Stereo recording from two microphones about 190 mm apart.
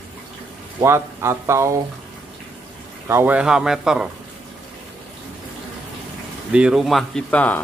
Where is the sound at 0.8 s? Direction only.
15° right (ahead or behind).